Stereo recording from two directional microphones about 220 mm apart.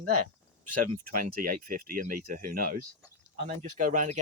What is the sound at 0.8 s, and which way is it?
Speech, 40° right (ahead or behind).